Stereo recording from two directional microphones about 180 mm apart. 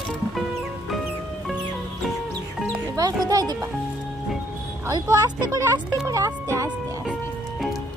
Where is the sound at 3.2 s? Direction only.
20° right (ahead or behind).